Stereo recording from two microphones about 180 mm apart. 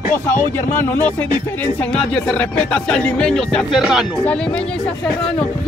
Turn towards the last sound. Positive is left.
turn(degrees=0)  # may be behind; listen again after turning